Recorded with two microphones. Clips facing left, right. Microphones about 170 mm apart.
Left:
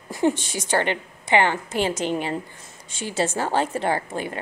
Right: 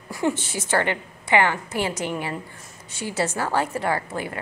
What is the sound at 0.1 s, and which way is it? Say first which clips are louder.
A woman's voice: left 3 dB; 20° left (ahead or behind).